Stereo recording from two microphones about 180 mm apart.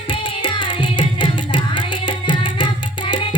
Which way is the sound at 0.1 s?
30° left (ahead or behind).